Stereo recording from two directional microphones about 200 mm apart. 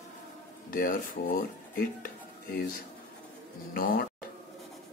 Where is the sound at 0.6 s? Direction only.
45° left (ahead or behind).